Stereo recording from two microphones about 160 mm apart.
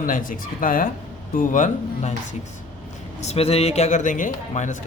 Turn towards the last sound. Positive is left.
turn(degrees=50)  # may be behind; listen again after turning